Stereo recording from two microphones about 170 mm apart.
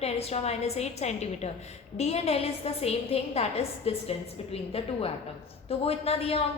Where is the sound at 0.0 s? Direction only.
35° left (ahead or behind).